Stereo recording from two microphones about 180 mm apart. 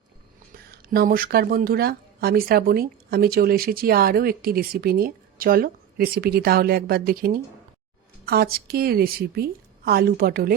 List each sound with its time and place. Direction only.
0.5 s speech: 55° right (ahead or behind)